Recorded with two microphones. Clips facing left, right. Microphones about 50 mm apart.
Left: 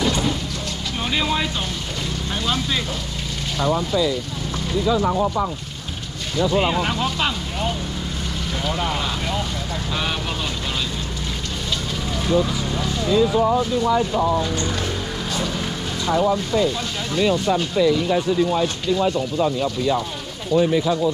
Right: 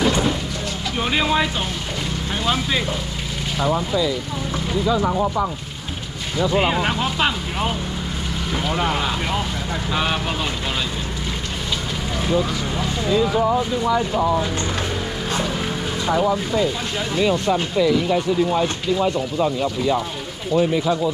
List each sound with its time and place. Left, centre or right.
0.0 s vehicle: centre
2.4 s speech: centre
12.3 s speech: centre
13.9 s speech: centre
15.3 s music: centre
17.1 s speech: centre
18.5 s speech: centre